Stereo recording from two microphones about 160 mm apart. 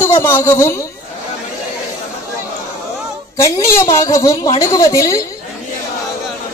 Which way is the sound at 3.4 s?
20° left (ahead or behind).